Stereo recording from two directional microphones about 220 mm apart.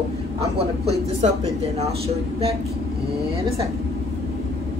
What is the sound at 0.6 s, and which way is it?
Speech, 30° right (ahead or behind).